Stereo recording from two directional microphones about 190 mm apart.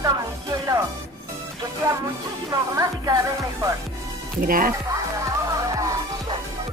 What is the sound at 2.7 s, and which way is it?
Music, 20° right (ahead or behind).